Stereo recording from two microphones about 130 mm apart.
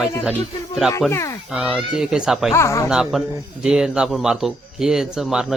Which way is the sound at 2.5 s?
20° left (ahead or behind).